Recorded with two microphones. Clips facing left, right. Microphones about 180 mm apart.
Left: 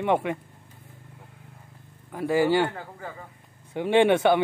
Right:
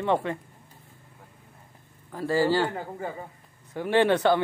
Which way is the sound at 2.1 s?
15° left (ahead or behind).